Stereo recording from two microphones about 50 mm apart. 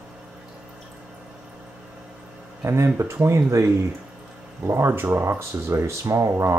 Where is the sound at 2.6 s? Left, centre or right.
Right.